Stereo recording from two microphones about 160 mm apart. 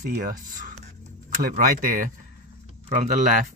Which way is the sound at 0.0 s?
60° right (ahead or behind).